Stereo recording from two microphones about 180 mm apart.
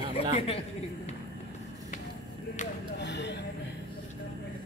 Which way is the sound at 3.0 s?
70° left (ahead or behind).